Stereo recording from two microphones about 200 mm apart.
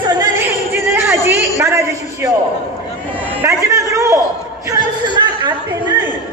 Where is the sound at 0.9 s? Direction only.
10° right (ahead or behind).